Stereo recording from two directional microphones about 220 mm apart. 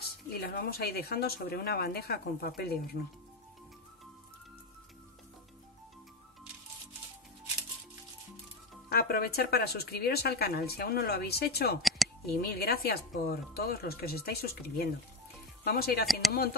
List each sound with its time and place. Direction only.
0.3 s speech: 45° left (ahead or behind)
8.8 s speech: 45° left (ahead or behind)